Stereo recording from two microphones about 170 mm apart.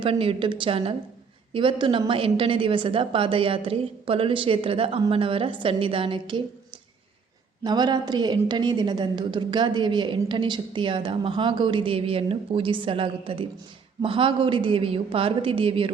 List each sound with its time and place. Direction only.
0.0 s a woman's voice: 35° right (ahead or behind)
7.6 s a woman's voice: 25° right (ahead or behind)